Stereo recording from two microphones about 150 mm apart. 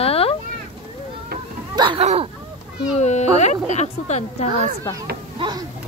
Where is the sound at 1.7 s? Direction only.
30° right (ahead or behind).